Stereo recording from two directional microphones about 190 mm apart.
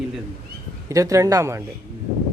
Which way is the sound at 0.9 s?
15° right (ahead or behind).